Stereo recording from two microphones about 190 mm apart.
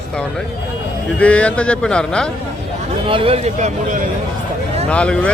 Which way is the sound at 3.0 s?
30° right (ahead or behind).